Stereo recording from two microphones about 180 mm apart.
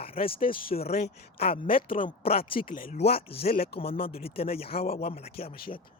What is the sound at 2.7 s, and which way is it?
Speech, 45° left (ahead or behind).